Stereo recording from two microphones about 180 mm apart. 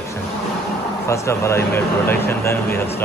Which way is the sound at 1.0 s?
15° left (ahead or behind).